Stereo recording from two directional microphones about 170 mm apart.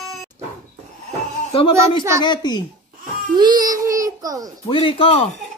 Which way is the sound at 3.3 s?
25° right (ahead or behind).